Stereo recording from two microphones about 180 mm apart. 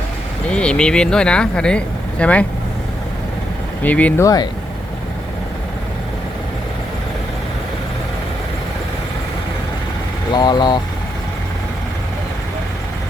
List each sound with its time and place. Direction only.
0.5 s speech: 5° left (ahead or behind)
3.8 s speech: 10° left (ahead or behind)
10.3 s speech: 25° left (ahead or behind)